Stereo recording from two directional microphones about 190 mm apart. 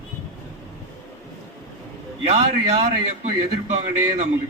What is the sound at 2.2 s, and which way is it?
A man's voice, 35° right (ahead or behind).